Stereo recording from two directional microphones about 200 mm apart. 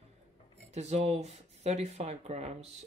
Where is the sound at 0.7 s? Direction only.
35° right (ahead or behind).